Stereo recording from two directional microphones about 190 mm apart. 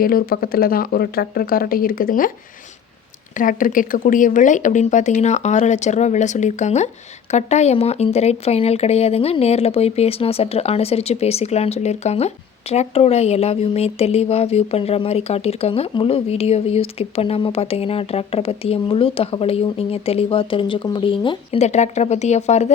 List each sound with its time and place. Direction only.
0.0 s speech: 50° left (ahead or behind)
3.3 s speech: 45° left (ahead or behind)